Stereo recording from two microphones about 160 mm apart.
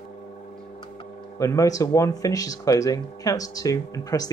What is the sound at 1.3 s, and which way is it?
Speech, 20° left (ahead or behind).